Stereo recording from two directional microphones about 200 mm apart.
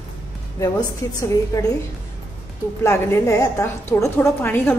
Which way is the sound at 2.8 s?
15° left (ahead or behind).